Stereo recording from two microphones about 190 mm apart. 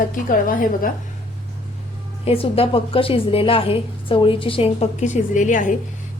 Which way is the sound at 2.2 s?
30° left (ahead or behind).